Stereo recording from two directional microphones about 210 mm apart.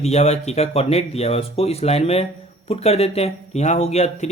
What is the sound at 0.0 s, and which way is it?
Speech, 30° left (ahead or behind).